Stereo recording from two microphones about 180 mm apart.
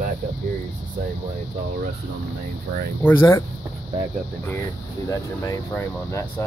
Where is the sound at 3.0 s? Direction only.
15° left (ahead or behind).